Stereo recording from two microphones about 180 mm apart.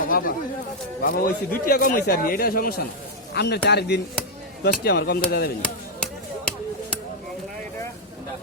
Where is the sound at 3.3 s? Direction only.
65° left (ahead or behind).